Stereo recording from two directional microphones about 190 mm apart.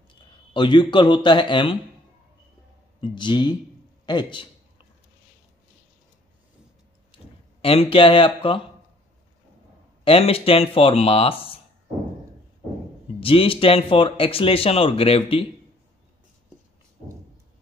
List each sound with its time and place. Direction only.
0.1 s speech: 25° left (ahead or behind)
3.0 s speech: 25° left (ahead or behind)
4.0 s a sound: 25° left (ahead or behind)
7.1 s clicking: 25° left (ahead or behind)
7.6 s speech: 30° left (ahead or behind)
10.0 s speech: 30° left (ahead or behind)
13.2 s speech: 30° left (ahead or behind)